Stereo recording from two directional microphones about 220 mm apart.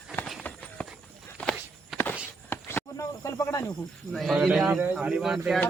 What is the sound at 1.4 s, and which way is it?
Walk, 5° left (ahead or behind).